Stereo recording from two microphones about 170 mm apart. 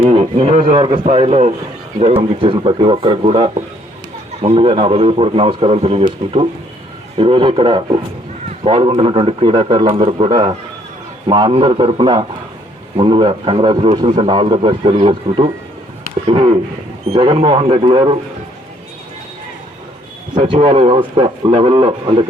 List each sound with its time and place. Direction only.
0.1 s a man's voice: 35° right (ahead or behind)
20.3 s a man's voice: 30° right (ahead or behind)